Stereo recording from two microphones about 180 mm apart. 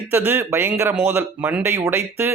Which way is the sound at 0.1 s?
10° right (ahead or behind).